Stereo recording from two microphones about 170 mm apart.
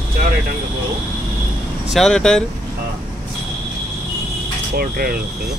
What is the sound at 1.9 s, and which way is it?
Speech, 5° left (ahead or behind).